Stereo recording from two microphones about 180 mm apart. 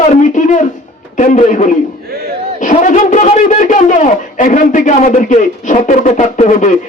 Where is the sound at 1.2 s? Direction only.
45° left (ahead or behind).